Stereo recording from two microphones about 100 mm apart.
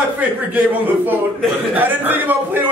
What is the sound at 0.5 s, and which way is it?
A man's voice, 20° right (ahead or behind).